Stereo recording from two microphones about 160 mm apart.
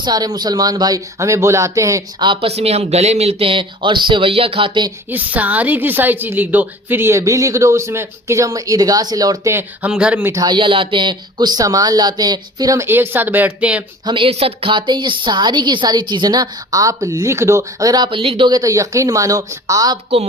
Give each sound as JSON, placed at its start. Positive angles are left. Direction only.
{"t": 0.0, "sound": "a woman's voice", "side_deg": -25}
{"t": 5.1, "sound": "a woman's voice", "side_deg": -10}
{"t": 10.3, "sound": "a woman's voice", "side_deg": -30}
{"t": 14.0, "sound": "a woman's voice", "side_deg": -30}